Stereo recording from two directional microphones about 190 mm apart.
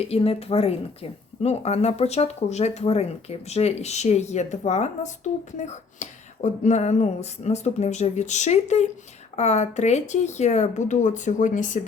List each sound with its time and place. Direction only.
0.1 s a woman's voice: 30° left (ahead or behind)